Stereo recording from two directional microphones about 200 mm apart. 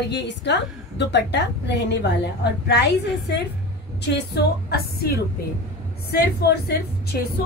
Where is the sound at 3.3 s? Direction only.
60° left (ahead or behind).